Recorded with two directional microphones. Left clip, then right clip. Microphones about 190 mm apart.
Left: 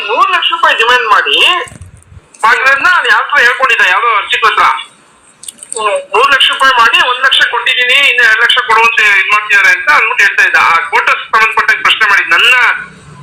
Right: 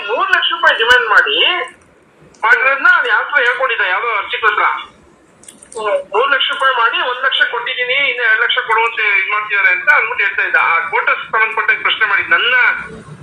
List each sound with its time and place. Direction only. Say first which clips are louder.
0.0 s speech: left 5 dB; 20° left (ahead or behind)
5.7 s speech: left 5 dB; 15° left (ahead or behind)